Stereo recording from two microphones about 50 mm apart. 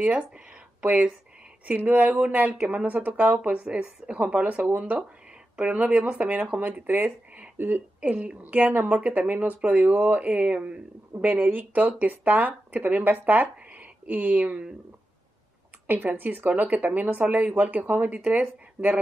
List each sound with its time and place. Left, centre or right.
0.0 s speech: right
1.7 s speech: right
3.4 s speech: right
5.6 s speech: right
6.6 s a woman's voice: right
8.0 s speech: right
15.9 s speech: right